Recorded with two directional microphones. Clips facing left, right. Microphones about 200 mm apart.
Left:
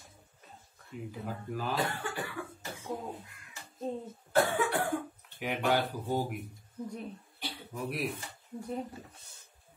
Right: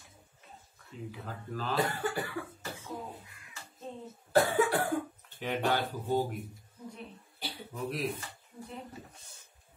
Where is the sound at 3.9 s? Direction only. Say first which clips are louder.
Left 7 dB; 40° left (ahead or behind).